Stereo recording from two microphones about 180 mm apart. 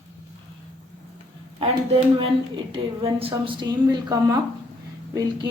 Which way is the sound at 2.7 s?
30° right (ahead or behind).